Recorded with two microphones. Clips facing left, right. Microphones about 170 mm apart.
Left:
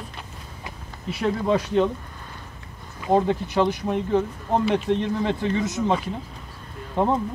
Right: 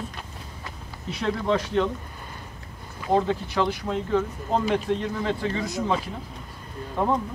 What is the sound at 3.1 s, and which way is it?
Speech, 15° left (ahead or behind).